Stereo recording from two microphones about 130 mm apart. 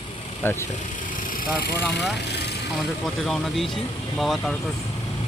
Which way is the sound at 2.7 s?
Centre (ahead or behind).